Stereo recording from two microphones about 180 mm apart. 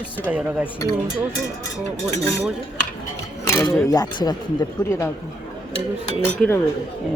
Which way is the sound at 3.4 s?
15° left (ahead or behind).